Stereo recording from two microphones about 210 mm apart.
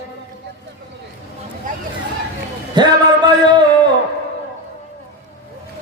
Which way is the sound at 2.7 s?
20° right (ahead or behind).